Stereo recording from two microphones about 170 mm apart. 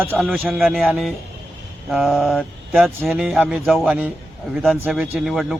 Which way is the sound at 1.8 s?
Centre (ahead or behind).